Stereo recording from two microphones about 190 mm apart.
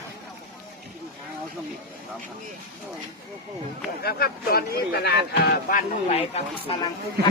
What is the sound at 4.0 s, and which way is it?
Speech, 55° left (ahead or behind).